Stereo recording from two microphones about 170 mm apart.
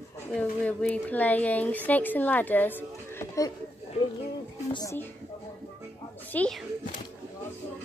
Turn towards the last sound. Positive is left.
turn(degrees=5)  # may be behind; listen again after turning